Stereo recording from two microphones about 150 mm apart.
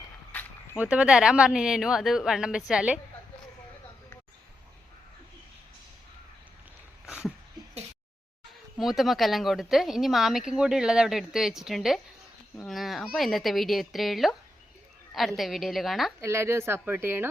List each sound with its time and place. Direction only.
0.8 s speech: 10° right (ahead or behind)
7.0 s a sound: 5° right (ahead or behind)
8.8 s speech: centre (ahead or behind)
16.2 s speech: 20° right (ahead or behind)